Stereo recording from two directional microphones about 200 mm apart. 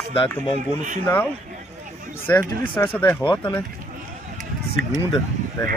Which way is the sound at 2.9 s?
10° left (ahead or behind).